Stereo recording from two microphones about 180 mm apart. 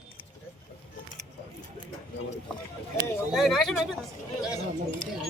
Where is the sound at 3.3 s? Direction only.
Centre (ahead or behind).